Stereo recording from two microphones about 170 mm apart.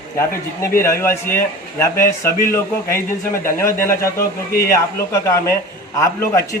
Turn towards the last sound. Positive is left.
turn(degrees=15)  # may be behind; listen again after turning